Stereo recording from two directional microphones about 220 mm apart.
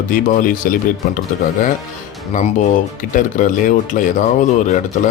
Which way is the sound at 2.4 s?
35° left (ahead or behind).